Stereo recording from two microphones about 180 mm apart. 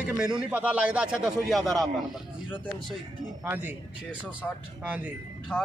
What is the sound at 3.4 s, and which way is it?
Speech, 10° right (ahead or behind).